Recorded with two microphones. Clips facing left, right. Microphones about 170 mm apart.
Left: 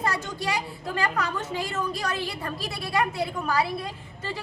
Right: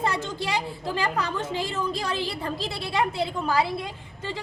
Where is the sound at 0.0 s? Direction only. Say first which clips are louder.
Right 1 dB; 25° right (ahead or behind).